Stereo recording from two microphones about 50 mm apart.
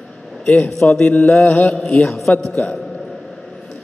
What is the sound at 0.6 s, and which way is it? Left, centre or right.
Speech, left.